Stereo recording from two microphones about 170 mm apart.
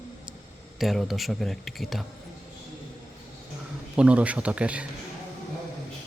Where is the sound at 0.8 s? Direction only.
Centre (ahead or behind).